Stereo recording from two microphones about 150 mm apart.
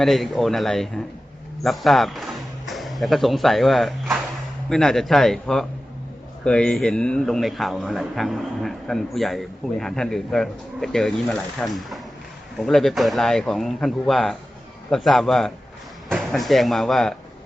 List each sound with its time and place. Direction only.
0.0 s a man's voice: centre (ahead or behind)